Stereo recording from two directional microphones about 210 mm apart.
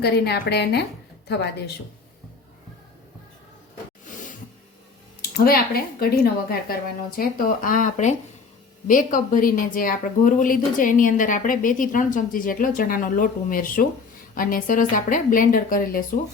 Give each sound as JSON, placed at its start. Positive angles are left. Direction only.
{"t": 0.0, "sound": "a woman's voice", "side_deg": 50}
{"t": 5.2, "sound": "a woman's voice", "side_deg": 45}